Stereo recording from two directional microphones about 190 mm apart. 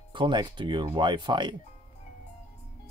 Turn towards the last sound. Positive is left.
turn(degrees=-25)  # may be behind; listen again after turning